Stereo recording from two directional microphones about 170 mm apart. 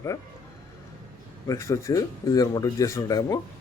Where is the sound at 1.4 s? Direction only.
15° left (ahead or behind).